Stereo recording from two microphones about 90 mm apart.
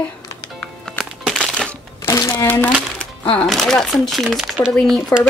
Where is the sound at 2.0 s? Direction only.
35° left (ahead or behind).